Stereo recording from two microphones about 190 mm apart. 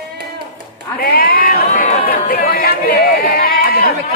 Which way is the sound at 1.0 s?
50° left (ahead or behind).